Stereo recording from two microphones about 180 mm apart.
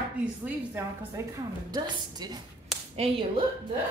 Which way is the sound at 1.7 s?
25° right (ahead or behind).